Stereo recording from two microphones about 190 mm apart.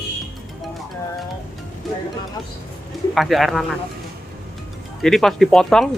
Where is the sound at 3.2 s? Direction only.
Centre (ahead or behind).